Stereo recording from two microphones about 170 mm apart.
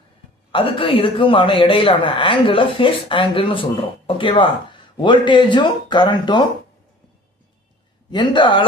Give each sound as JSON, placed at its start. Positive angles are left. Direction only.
{"t": 0.5, "sound": "speech", "side_deg": 30}
{"t": 8.1, "sound": "speech", "side_deg": 30}